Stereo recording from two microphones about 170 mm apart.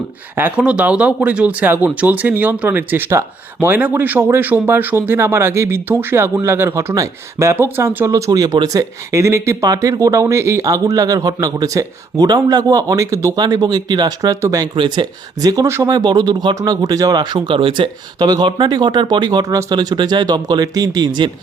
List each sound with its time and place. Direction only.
0.3 s speech: 10° right (ahead or behind)